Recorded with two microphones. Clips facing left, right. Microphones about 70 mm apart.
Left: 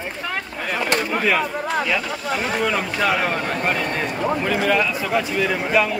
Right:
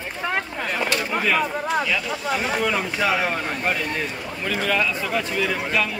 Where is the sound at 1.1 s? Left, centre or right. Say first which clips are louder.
Left 1 dB; centre.